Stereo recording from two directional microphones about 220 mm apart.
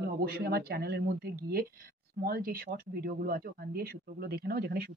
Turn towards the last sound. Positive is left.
turn(degrees=-45)  # may be behind; listen again after turning